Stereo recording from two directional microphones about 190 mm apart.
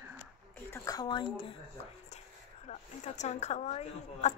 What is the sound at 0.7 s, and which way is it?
Speech, 20° left (ahead or behind).